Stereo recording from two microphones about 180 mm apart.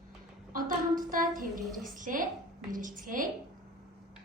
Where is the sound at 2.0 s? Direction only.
50° right (ahead or behind).